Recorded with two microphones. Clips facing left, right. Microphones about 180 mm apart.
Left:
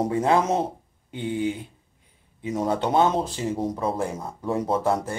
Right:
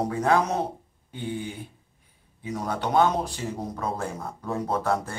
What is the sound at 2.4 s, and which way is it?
Speech, 25° left (ahead or behind).